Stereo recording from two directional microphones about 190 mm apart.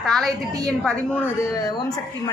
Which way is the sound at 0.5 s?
20° right (ahead or behind).